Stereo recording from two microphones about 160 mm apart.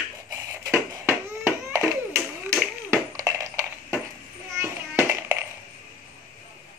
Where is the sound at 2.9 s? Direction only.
20° right (ahead or behind).